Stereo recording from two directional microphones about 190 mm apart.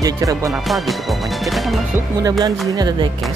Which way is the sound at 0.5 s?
Centre (ahead or behind).